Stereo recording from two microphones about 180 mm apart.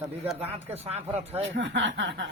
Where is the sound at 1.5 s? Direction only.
90° right.